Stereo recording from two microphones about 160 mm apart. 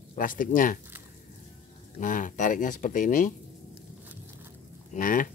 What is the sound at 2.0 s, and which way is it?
Speech, 55° left (ahead or behind).